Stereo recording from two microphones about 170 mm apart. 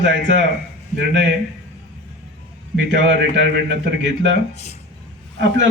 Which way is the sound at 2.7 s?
90° right.